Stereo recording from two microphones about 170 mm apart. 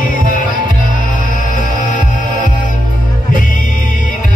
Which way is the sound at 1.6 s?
50° left (ahead or behind).